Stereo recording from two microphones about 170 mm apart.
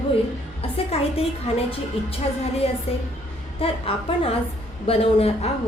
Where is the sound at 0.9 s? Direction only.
35° left (ahead or behind).